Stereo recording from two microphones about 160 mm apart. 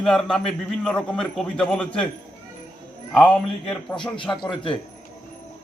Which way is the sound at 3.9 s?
30° left (ahead or behind).